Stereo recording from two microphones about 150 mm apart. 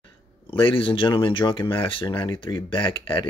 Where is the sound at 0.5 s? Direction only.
35° left (ahead or behind).